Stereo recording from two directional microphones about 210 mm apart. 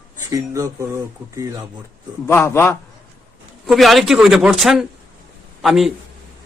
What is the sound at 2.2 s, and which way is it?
Speech, 10° left (ahead or behind).